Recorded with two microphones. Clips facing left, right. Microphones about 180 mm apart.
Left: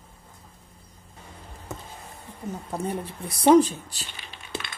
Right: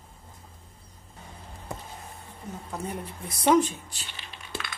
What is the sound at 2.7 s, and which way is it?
Speech, 30° left (ahead or behind).